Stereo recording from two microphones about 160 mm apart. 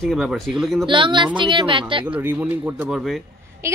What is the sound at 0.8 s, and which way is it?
Speech, 30° right (ahead or behind).